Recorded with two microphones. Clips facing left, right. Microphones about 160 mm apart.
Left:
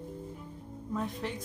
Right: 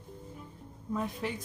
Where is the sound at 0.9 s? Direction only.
Centre (ahead or behind).